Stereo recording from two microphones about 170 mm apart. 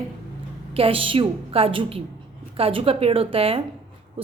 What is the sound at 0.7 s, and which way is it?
A woman's voice, 35° right (ahead or behind).